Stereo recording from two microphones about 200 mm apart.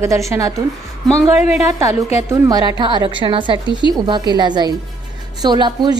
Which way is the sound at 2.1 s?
15° right (ahead or behind).